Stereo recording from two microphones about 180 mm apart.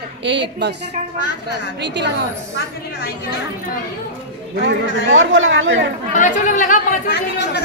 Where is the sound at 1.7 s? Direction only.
70° right (ahead or behind).